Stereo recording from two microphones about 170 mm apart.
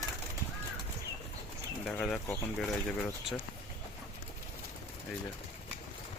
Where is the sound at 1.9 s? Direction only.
5° left (ahead or behind).